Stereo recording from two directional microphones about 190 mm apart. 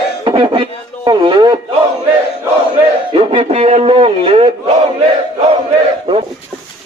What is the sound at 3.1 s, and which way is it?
A man's voice, 30° right (ahead or behind).